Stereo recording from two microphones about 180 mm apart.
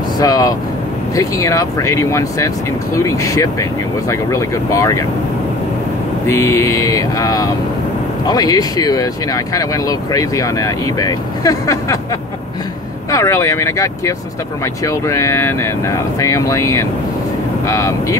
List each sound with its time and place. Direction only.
0.2 s speech: 20° left (ahead or behind)
6.2 s speech: 15° left (ahead or behind)
13.1 s speech: 15° left (ahead or behind)